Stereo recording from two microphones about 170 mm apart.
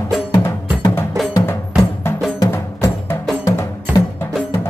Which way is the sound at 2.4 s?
15° left (ahead or behind).